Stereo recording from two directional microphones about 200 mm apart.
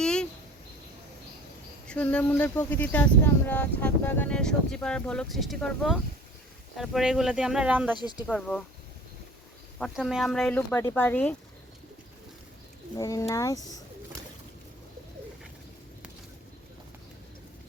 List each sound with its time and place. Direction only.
0.0 s a sound: 5° left (ahead or behind)
1.9 s speech: 5° left (ahead or behind)
7.9 s speech: 20° left (ahead or behind)
8.3 s speech: centre (ahead or behind)
9.7 s speech: centre (ahead or behind)
13.0 s speech: 15° left (ahead or behind)